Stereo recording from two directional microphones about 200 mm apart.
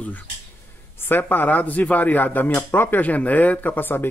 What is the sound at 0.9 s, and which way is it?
Speech, 10° left (ahead or behind).